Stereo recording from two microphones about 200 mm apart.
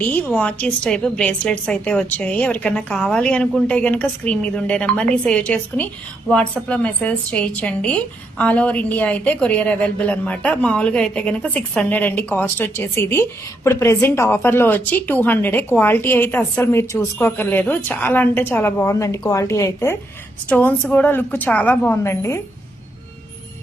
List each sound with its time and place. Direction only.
0.0 s a woman's voice: 5° left (ahead or behind)